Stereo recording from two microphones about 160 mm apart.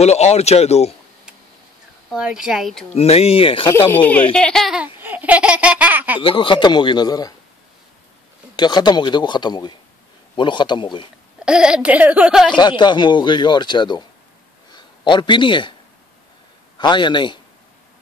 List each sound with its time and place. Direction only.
0.0 s speech: 40° left (ahead or behind)
2.0 s speech: 5° right (ahead or behind)
2.9 s speech: 40° left (ahead or behind)
3.6 s speech: 15° left (ahead or behind)
5.0 s laughter: 10° right (ahead or behind)
6.2 s speech: 35° left (ahead or behind)
8.5 s speech: 25° left (ahead or behind)
11.4 s speech: 5° right (ahead or behind)
12.5 s a man's voice: 25° left (ahead or behind)
16.7 s speech: 30° left (ahead or behind)